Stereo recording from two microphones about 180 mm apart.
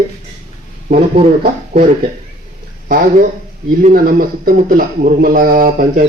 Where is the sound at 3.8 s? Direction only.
50° right (ahead or behind).